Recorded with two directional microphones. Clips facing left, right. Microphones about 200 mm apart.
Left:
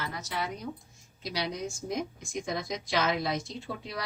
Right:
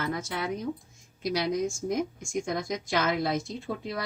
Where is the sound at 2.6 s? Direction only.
50° right (ahead or behind).